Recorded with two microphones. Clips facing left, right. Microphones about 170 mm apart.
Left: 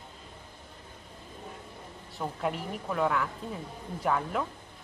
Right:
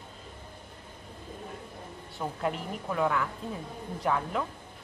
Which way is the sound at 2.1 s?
Centre (ahead or behind).